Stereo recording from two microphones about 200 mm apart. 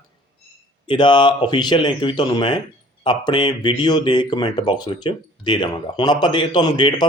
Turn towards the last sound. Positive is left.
turn(degrees=20)  # may be behind; listen again after turning